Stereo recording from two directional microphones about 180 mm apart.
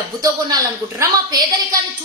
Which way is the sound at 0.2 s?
20° right (ahead or behind).